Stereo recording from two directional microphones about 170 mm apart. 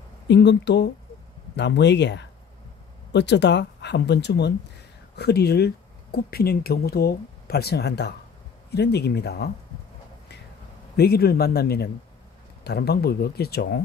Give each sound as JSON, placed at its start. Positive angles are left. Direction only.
{"t": 0.3, "sound": "speech", "side_deg": 90}
{"t": 5.1, "sound": "speech", "side_deg": 70}
{"t": 11.0, "sound": "speech", "side_deg": 70}